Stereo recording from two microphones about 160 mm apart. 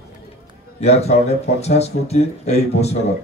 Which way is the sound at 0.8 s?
40° left (ahead or behind).